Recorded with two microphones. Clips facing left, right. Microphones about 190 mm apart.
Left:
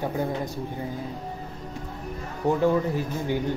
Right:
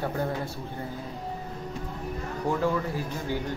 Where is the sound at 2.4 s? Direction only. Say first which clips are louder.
Left 5 dB; 20° left (ahead or behind).